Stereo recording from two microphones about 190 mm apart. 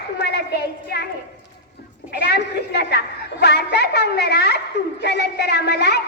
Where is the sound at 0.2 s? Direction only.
60° left (ahead or behind).